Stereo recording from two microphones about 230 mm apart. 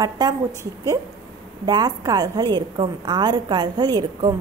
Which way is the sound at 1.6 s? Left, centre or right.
Centre.